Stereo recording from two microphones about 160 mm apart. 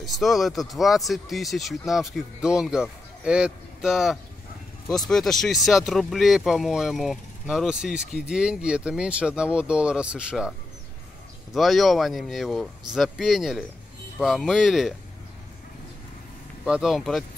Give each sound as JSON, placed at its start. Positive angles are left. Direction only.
{"t": 0.0, "sound": "speech", "side_deg": 0}
{"t": 11.5, "sound": "speech", "side_deg": 0}
{"t": 16.6, "sound": "speech", "side_deg": 0}